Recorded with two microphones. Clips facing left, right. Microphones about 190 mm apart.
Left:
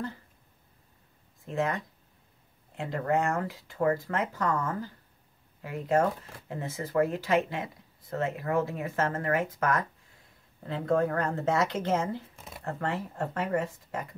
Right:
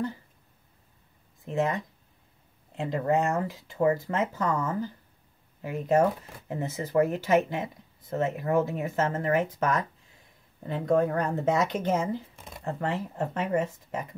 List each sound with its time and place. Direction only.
1.4 s speech: 20° right (ahead or behind)
2.8 s speech: 20° right (ahead or behind)
12.4 s speech: centre (ahead or behind)
12.6 s speech: 20° right (ahead or behind)